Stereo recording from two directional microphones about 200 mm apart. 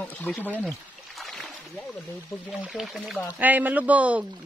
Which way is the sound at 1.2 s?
Centre (ahead or behind).